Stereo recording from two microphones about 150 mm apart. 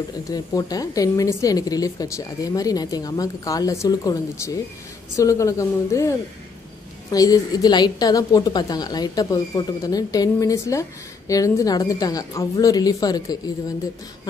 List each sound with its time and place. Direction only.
0.3 s a woman's voice: 25° left (ahead or behind)